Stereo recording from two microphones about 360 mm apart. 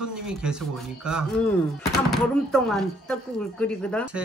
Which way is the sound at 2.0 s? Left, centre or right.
Centre.